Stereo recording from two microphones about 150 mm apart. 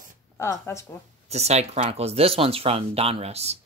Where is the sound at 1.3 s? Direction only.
45° right (ahead or behind).